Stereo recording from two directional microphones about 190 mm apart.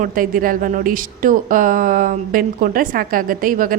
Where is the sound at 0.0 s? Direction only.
45° right (ahead or behind).